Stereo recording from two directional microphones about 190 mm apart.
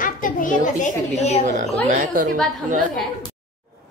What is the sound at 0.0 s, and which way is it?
A child's voice, 45° left (ahead or behind).